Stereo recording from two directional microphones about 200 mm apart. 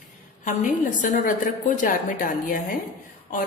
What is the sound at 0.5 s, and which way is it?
A woman's voice, 40° left (ahead or behind).